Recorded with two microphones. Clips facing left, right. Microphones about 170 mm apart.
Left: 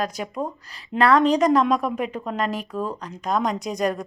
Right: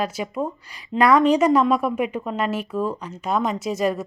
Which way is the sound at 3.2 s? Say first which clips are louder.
Right 1 dB; 5° right (ahead or behind).